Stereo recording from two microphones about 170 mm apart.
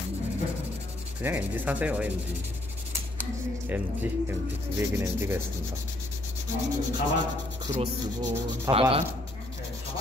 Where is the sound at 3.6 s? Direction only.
10° right (ahead or behind).